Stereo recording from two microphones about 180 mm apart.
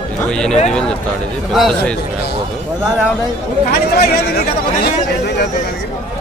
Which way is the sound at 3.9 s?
60° left (ahead or behind).